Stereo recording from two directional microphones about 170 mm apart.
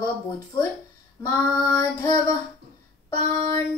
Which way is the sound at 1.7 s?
20° left (ahead or behind).